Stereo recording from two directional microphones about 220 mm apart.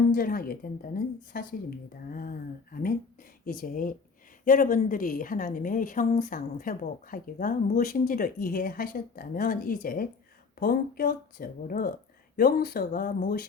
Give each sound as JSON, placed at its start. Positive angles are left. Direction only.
{"t": 0.1, "sound": "a woman's voice", "side_deg": 40}
{"t": 3.4, "sound": "a woman's voice", "side_deg": 40}